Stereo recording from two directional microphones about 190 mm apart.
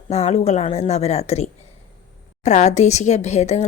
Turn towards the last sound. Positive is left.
turn(degrees=35)  # may be behind; listen again after turning